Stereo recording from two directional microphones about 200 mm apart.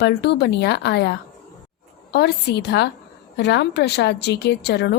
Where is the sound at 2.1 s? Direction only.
55° left (ahead or behind).